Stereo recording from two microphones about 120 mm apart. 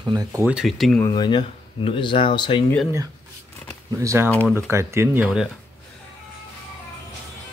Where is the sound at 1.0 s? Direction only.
40° left (ahead or behind).